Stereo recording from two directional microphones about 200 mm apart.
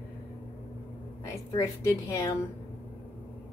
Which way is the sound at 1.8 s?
15° left (ahead or behind).